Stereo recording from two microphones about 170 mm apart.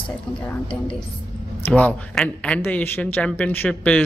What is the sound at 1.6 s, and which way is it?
A man's voice, 10° left (ahead or behind).